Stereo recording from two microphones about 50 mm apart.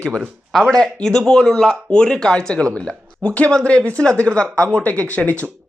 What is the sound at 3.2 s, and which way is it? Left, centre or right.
Speech, left.